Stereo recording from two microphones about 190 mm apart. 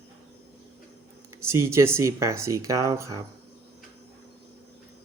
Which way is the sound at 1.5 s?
15° right (ahead or behind).